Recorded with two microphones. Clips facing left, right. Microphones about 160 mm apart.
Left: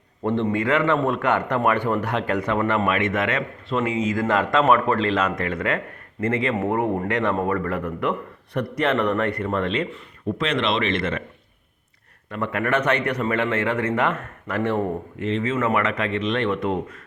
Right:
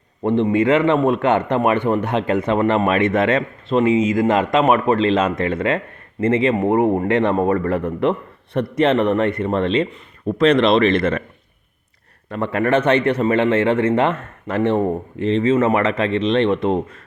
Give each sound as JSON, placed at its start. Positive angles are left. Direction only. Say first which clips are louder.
{"t": 0.2, "sound": "a man's voice", "louder": "right 6 dB", "side_deg": -15}
{"t": 10.2, "sound": "speech", "louder": "right 9 dB", "side_deg": -40}
{"t": 12.3, "sound": "a man's voice", "louder": "right 5 dB", "side_deg": -30}